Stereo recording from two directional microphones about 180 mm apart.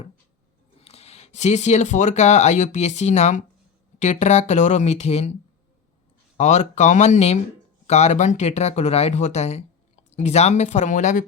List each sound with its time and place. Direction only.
0.8 s speech: 35° left (ahead or behind)